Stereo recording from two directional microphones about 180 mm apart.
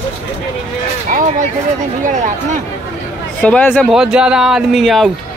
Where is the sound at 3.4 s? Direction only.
10° left (ahead or behind).